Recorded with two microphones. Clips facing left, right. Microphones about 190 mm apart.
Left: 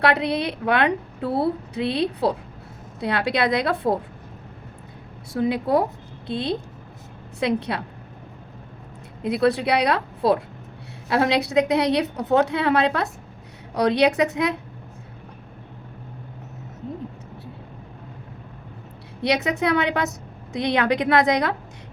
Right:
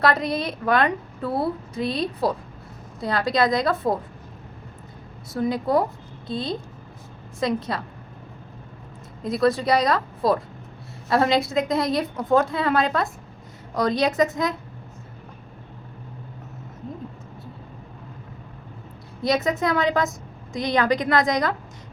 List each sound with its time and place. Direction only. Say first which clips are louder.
0.0 s a woman's voice: left 1 dB; 65° left (ahead or behind)
5.3 s a woman's voice: left 1 dB; 65° left (ahead or behind)
9.2 s a woman's voice: left 1 dB; 65° left (ahead or behind)
19.2 s a woman's voice: even; 70° left (ahead or behind)